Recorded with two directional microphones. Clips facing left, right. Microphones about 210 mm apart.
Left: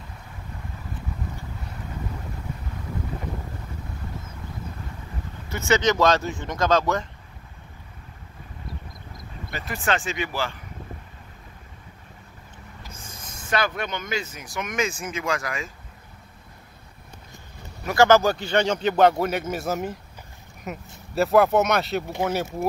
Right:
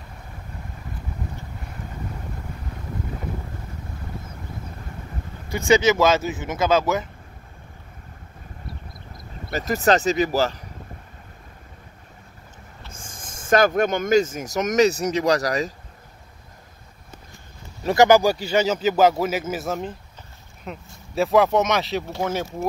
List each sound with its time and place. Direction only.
5.5 s a man's voice: 15° right (ahead or behind)
9.5 s speech: 40° right (ahead or behind)
12.9 s speech: 50° right (ahead or behind)
17.9 s a man's voice: 15° right (ahead or behind)